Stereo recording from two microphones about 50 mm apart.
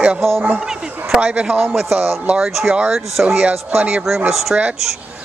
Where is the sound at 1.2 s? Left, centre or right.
Right.